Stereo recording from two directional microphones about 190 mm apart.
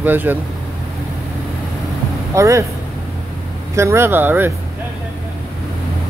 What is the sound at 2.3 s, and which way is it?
Speech, 15° right (ahead or behind).